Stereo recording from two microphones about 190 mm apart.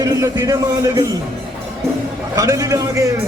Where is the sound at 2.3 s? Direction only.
20° right (ahead or behind).